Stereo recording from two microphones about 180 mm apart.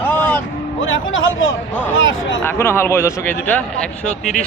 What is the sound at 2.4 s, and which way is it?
A man's voice, 15° left (ahead or behind).